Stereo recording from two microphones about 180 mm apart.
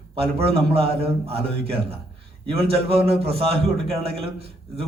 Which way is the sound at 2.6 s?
30° right (ahead or behind).